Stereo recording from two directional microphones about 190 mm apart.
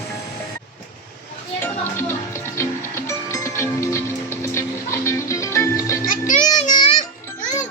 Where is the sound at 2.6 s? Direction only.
15° left (ahead or behind).